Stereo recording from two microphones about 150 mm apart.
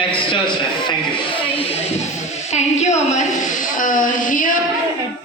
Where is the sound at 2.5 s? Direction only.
50° left (ahead or behind).